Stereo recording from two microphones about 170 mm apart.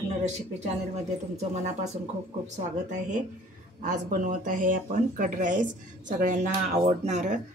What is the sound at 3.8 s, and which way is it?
Speech, 50° right (ahead or behind).